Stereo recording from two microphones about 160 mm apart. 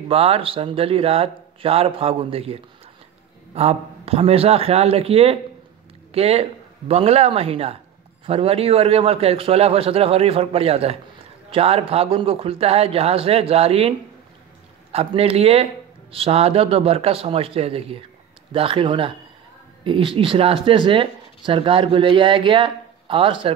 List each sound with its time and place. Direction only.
0.1 s speech: 40° right (ahead or behind)